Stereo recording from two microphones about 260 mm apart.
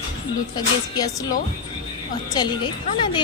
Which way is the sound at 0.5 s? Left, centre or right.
Centre.